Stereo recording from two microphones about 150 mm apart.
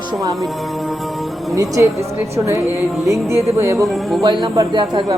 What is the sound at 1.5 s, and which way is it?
Speech, 20° right (ahead or behind).